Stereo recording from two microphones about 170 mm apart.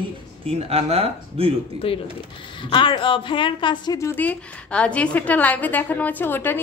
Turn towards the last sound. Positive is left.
turn(degrees=10)  # may be behind; listen again after turning